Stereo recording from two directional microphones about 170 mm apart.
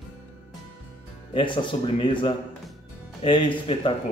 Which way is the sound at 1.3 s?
30° left (ahead or behind).